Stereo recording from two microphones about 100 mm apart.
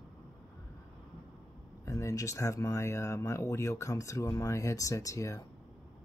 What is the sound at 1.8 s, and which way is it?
Speech, 30° left (ahead or behind).